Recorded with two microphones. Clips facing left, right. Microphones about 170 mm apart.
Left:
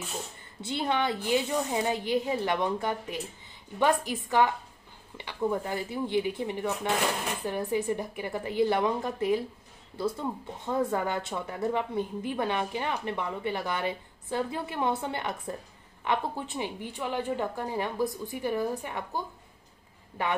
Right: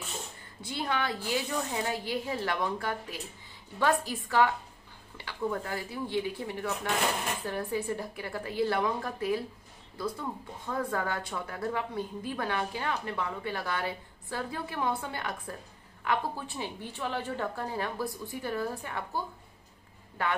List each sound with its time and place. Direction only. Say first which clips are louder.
0.6 s a woman's voice: left 4 dB; 25° left (ahead or behind)